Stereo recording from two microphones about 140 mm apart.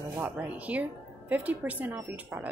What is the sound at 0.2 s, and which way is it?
A woman's voice, 10° right (ahead or behind).